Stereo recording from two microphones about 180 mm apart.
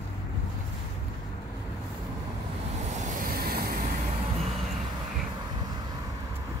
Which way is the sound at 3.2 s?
55° right (ahead or behind).